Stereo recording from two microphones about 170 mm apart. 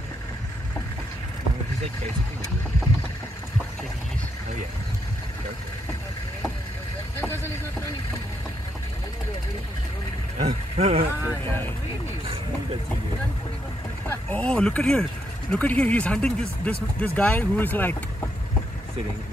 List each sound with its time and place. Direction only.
10.4 s speech: 40° right (ahead or behind)
14.0 s speech: 10° left (ahead or behind)